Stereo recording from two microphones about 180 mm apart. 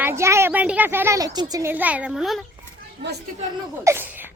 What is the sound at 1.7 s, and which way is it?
Speech, 10° right (ahead or behind).